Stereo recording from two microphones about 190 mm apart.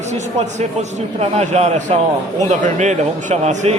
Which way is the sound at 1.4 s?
40° right (ahead or behind).